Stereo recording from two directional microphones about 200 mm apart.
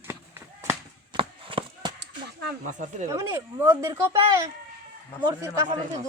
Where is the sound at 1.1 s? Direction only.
25° right (ahead or behind).